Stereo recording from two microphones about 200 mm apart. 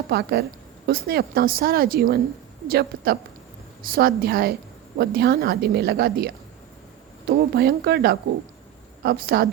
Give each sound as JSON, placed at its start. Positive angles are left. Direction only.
{"t": 0.1, "sound": "a woman's voice", "side_deg": -55}